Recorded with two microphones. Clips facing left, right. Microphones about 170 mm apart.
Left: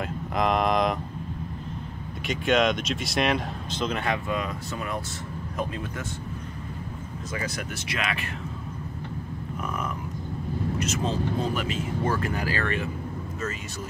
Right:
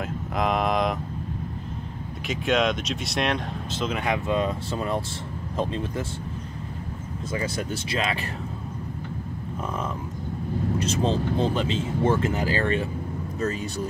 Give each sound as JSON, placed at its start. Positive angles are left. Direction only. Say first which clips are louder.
{"t": 0.4, "sound": "vehicle", "louder": "left 1 dB", "side_deg": 0}
{"t": 2.2, "sound": "speech", "louder": "left 1 dB", "side_deg": 0}
{"t": 4.1, "sound": "speech", "louder": "right 4 dB", "side_deg": -30}
{"t": 7.3, "sound": "speech", "louder": "right 4 dB", "side_deg": -30}
{"t": 10.8, "sound": "speech", "louder": "right 4 dB", "side_deg": -30}